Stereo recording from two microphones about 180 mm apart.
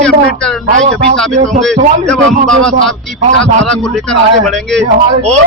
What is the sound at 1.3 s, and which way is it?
Speech, 45° right (ahead or behind).